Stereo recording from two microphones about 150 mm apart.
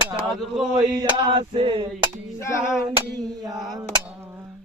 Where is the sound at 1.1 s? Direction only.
30° right (ahead or behind).